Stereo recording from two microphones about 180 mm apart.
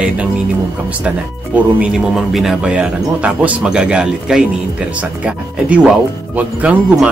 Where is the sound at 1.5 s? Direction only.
5° right (ahead or behind).